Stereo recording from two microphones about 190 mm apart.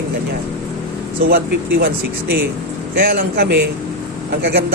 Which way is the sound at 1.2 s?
50° right (ahead or behind).